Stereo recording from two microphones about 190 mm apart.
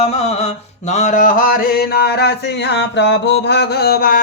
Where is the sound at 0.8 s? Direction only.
40° left (ahead or behind).